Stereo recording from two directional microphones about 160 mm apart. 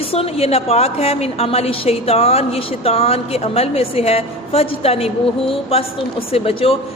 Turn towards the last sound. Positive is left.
turn(degrees=35)  # may be behind; listen again after turning